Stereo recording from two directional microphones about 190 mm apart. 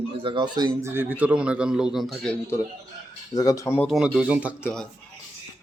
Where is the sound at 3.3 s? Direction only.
20° left (ahead or behind).